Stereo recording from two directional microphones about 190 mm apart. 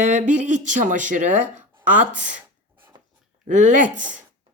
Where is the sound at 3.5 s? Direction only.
40° right (ahead or behind).